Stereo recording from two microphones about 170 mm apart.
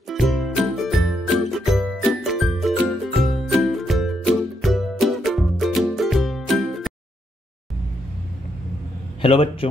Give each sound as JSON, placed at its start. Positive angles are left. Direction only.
{"t": 0.1, "sound": "music", "side_deg": 0}
{"t": 9.2, "sound": "a man's voice", "side_deg": 35}